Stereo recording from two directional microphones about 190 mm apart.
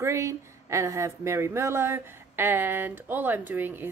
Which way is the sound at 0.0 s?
15° right (ahead or behind).